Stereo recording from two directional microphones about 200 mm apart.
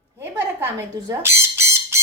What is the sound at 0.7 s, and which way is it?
Squawk, 15° right (ahead or behind).